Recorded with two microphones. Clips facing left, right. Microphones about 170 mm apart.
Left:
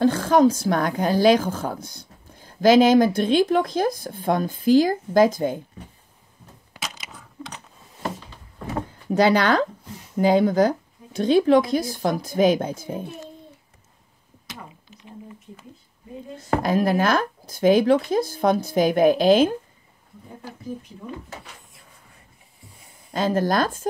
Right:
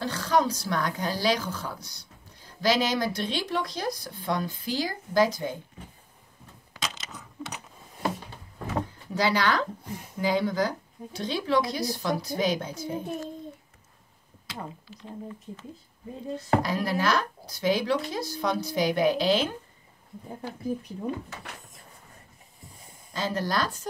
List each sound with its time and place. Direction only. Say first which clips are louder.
0.0 s a woman's voice: left 9 dB; 50° left (ahead or behind)
6.7 s coin: even; 10° left (ahead or behind)
7.1 s coin: even; 5° right (ahead or behind)
9.1 s a woman's voice: left 7 dB; 55° left (ahead or behind)
16.6 s a woman's voice: left 7 dB; 50° left (ahead or behind)
23.1 s a woman's voice: left 7 dB; 50° left (ahead or behind)